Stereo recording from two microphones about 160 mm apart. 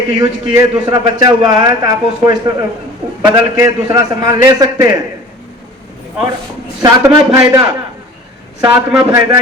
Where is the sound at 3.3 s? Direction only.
20° right (ahead or behind).